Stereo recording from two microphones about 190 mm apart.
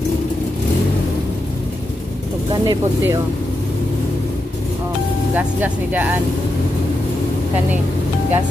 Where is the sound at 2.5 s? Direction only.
20° right (ahead or behind).